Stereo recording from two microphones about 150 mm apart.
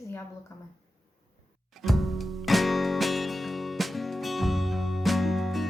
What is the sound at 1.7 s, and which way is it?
Music, centre (ahead or behind).